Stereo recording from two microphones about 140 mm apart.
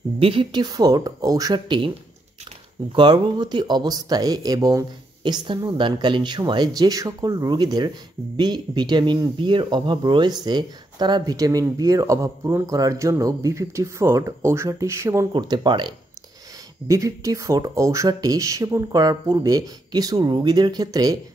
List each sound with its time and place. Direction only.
0.2 s speech: 40° right (ahead or behind)
2.9 s speech: 35° right (ahead or behind)
15.3 s speech: 35° right (ahead or behind)